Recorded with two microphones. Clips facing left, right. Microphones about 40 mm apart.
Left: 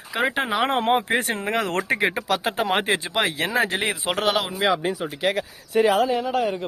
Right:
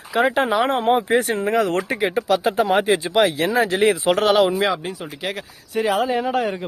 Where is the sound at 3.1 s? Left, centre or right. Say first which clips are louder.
Right 5 dB; centre.